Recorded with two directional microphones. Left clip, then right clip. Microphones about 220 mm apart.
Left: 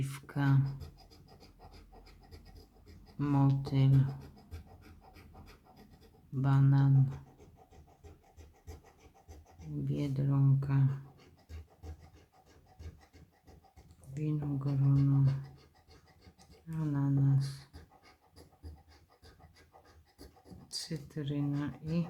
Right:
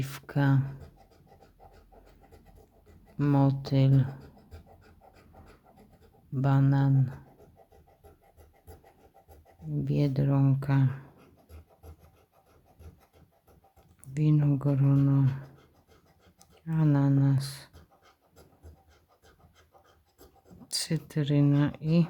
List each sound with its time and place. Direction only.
0.0 s a sound: 30° right (ahead or behind)
3.2 s speech: 30° right (ahead or behind)
6.3 s speech: 30° right (ahead or behind)
9.8 s speech: 35° right (ahead or behind)
14.1 s speech: 45° right (ahead or behind)
16.4 s speech: 45° right (ahead or behind)
20.7 s speech: 45° right (ahead or behind)